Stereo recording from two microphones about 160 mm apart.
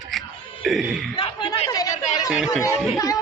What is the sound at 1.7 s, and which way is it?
Speech, 25° left (ahead or behind).